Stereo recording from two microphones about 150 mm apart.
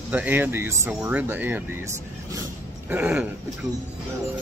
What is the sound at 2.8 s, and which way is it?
Speech, 10° right (ahead or behind).